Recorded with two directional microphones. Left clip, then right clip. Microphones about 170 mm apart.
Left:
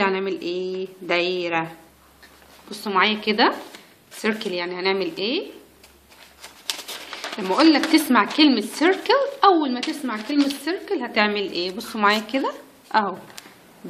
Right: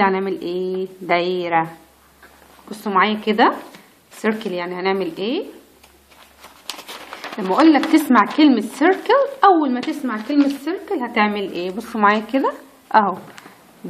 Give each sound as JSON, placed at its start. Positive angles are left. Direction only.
{"t": 0.0, "sound": "a woman's voice", "side_deg": -20}
{"t": 2.9, "sound": "speech", "side_deg": -10}
{"t": 7.3, "sound": "a woman's voice", "side_deg": -10}